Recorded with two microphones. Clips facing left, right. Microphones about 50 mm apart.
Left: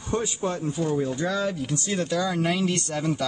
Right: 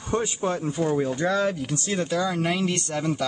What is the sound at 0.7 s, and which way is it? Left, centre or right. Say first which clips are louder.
Speech: right 2 dB; right.